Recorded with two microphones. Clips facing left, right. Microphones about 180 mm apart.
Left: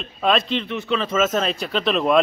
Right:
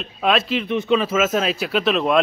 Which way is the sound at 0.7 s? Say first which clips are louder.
Right 5 dB; 15° right (ahead or behind).